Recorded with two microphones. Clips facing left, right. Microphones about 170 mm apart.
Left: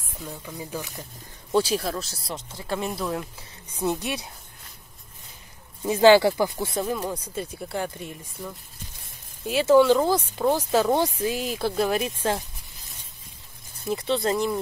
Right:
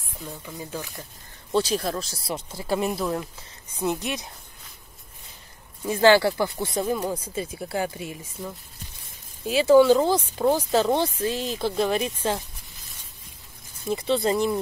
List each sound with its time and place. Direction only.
0.2 s speech: centre (ahead or behind)
0.6 s speech: 10° left (ahead or behind)
3.8 s speech: 15° right (ahead or behind)
5.9 s speech: 15° left (ahead or behind); by 8.3 s 5° right (ahead or behind)
9.5 s speech: centre (ahead or behind)
13.8 s speech: centre (ahead or behind)